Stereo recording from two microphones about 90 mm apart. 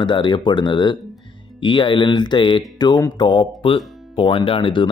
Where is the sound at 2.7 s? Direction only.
50° left (ahead or behind); by 4.9 s 75° left (ahead or behind).